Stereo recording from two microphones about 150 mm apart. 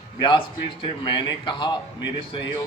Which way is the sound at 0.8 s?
30° left (ahead or behind).